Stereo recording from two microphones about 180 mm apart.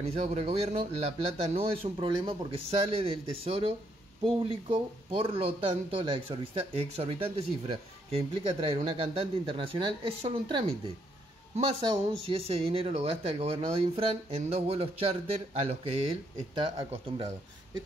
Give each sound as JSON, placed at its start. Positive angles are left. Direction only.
{"t": 0.0, "sound": "a man's voice", "side_deg": -35}